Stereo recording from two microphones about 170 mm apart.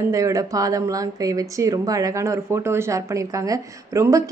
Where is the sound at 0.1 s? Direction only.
20° right (ahead or behind).